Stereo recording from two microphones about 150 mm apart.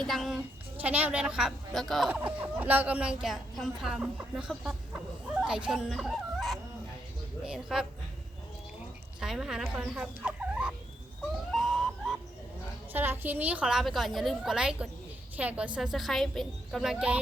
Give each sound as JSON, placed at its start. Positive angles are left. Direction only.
{"t": 0.0, "sound": "a woman's voice", "side_deg": 0}
{"t": 9.2, "sound": "a woman's voice", "side_deg": -5}
{"t": 9.8, "sound": "fowl", "side_deg": -10}
{"t": 11.5, "sound": "a sound", "side_deg": 0}
{"t": 12.9, "sound": "a woman's voice", "side_deg": -15}